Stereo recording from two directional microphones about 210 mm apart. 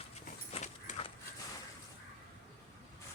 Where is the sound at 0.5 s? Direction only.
30° left (ahead or behind).